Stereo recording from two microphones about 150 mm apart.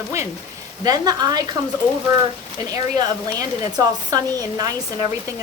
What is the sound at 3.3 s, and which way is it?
A woman's voice, 25° right (ahead or behind).